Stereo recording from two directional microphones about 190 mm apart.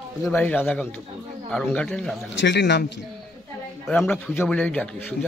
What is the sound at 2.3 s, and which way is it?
Speech, 70° left (ahead or behind).